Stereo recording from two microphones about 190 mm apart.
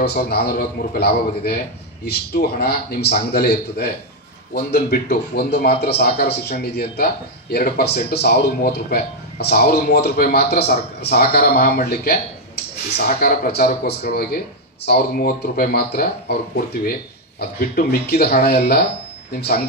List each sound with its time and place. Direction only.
0.0 s speech: 60° left (ahead or behind)